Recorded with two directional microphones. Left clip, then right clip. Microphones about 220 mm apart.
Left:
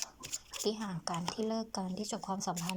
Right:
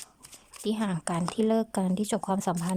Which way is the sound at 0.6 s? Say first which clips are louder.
Right 6 dB; 20° right (ahead or behind).